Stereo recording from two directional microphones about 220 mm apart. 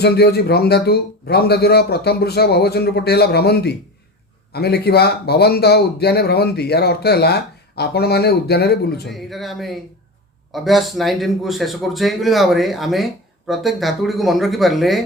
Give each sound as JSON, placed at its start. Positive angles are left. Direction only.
{"t": 0.0, "sound": "speech", "side_deg": 45}
{"t": 9.0, "sound": "speech", "side_deg": 0}